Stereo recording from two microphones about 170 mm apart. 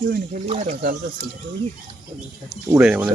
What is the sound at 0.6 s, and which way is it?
Speech, 50° right (ahead or behind).